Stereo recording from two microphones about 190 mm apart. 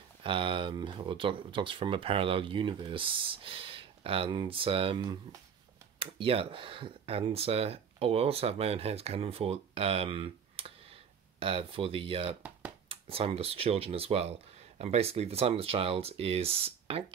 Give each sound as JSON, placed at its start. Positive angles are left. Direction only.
{"t": 0.2, "sound": "speech", "side_deg": -25}